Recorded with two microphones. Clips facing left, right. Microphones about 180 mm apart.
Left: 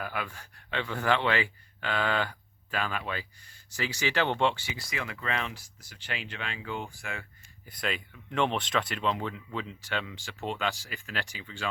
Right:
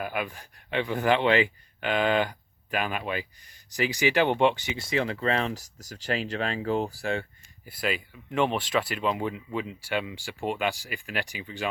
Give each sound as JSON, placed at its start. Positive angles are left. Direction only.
{"t": 0.0, "sound": "speech", "side_deg": -15}
{"t": 7.6, "sound": "speech", "side_deg": -5}